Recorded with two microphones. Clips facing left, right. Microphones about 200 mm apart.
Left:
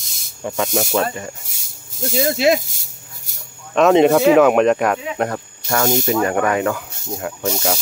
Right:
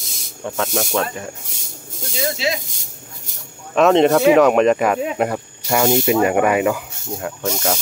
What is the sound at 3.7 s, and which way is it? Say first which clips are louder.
Speech: left 1 dB; centre (ahead or behind).